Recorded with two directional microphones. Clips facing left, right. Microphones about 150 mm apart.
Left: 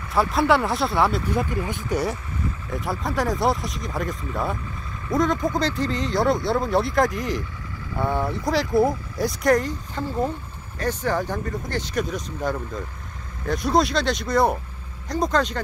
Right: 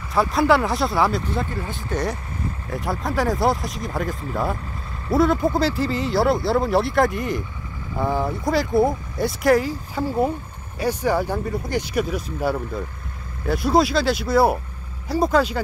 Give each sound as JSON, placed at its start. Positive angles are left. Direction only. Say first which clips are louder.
{"t": 0.1, "sound": "speech", "louder": "right 2 dB", "side_deg": 0}
{"t": 1.3, "sound": "speech", "louder": "left 2 dB", "side_deg": 15}
{"t": 2.7, "sound": "speech", "louder": "right 2 dB", "side_deg": 0}